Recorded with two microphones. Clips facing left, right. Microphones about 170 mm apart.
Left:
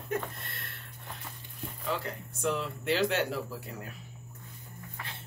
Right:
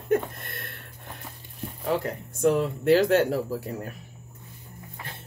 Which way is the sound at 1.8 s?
50° right (ahead or behind).